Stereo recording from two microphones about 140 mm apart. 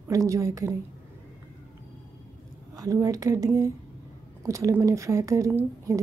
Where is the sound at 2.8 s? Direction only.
25° right (ahead or behind).